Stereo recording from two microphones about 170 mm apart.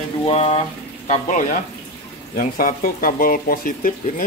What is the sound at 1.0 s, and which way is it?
Speech, 45° left (ahead or behind).